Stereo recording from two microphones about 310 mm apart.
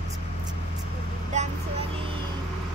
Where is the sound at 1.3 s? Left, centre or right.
Right.